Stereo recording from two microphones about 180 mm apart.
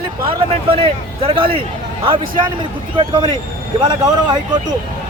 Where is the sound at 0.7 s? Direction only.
30° right (ahead or behind).